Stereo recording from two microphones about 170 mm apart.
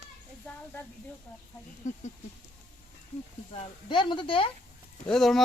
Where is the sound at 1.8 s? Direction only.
50° left (ahead or behind).